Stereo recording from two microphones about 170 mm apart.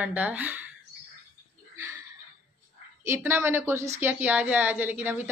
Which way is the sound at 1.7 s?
15° right (ahead or behind).